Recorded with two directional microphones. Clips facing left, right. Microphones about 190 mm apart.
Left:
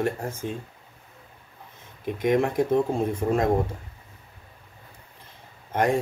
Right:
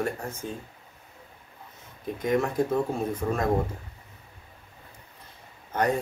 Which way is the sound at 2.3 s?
30° left (ahead or behind).